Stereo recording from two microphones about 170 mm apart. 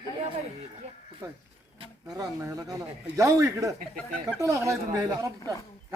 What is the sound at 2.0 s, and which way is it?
A man's voice, 20° right (ahead or behind).